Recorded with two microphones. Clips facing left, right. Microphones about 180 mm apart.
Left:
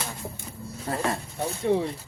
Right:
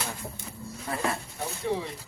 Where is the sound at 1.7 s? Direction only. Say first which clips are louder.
Left 6 dB; 55° left (ahead or behind).